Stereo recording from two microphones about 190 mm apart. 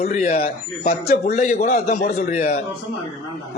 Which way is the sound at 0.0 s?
35° left (ahead or behind).